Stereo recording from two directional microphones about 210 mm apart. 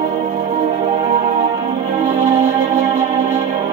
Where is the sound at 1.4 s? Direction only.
35° right (ahead or behind).